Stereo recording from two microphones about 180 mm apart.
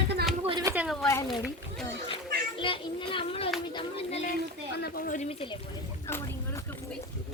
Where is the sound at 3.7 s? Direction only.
30° left (ahead or behind).